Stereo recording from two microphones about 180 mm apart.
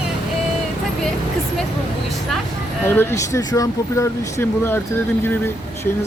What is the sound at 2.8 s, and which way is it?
Speech, 15° left (ahead or behind).